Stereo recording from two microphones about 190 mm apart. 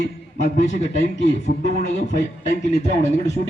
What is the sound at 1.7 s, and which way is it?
A man's voice, 40° left (ahead or behind).